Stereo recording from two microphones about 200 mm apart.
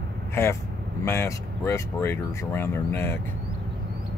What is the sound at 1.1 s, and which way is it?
Speech, 10° left (ahead or behind).